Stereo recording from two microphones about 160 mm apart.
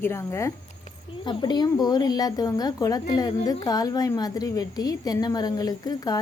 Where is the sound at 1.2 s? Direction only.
30° left (ahead or behind).